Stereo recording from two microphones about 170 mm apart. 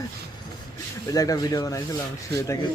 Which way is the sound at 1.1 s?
20° left (ahead or behind).